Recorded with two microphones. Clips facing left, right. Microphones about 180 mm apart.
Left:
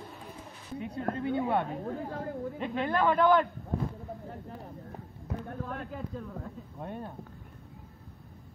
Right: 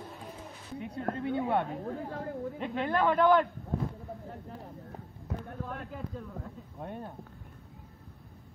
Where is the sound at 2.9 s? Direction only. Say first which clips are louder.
Even; 65° right (ahead or behind).